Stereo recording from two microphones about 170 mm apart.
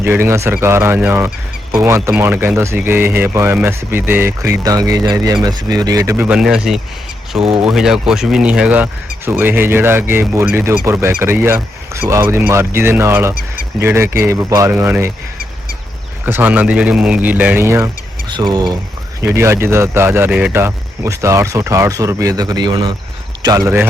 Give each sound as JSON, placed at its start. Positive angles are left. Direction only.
{"t": 0.0, "sound": "speech", "side_deg": -10}
{"t": 16.2, "sound": "speech", "side_deg": -10}
{"t": 19.2, "sound": "a man's voice", "side_deg": -15}